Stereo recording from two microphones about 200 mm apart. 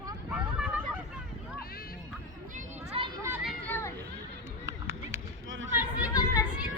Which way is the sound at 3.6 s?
10° left (ahead or behind).